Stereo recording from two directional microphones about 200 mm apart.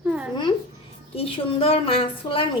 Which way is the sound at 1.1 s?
30° left (ahead or behind).